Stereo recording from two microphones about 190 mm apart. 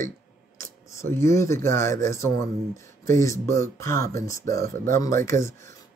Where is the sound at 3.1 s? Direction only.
15° left (ahead or behind).